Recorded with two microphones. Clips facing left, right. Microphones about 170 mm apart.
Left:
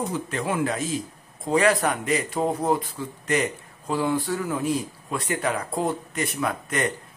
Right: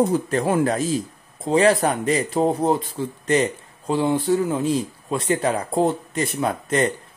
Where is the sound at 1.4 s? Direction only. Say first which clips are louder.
Right 4 dB; 30° right (ahead or behind).